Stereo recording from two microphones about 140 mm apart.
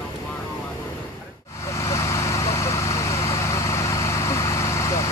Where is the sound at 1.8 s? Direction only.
20° left (ahead or behind).